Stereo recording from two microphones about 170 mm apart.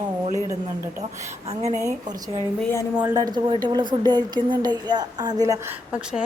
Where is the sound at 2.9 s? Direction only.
20° right (ahead or behind).